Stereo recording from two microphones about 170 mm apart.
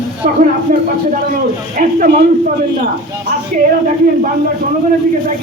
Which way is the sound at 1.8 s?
55° right (ahead or behind).